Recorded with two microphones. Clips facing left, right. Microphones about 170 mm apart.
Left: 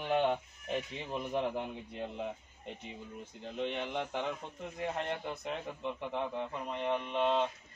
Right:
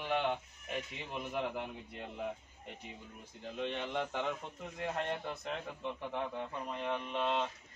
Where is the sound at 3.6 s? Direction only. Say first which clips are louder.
Left 1 dB; 15° left (ahead or behind).